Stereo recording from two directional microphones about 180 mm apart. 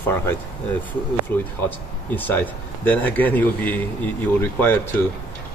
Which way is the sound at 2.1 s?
10° left (ahead or behind).